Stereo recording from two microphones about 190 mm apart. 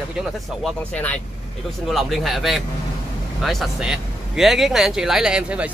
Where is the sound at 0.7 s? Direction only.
5° left (ahead or behind).